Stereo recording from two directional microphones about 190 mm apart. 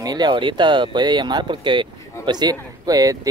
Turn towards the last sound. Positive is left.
turn(degrees=-20)  # may be behind; listen again after turning